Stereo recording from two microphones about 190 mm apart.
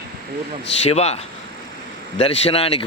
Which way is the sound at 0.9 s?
35° left (ahead or behind).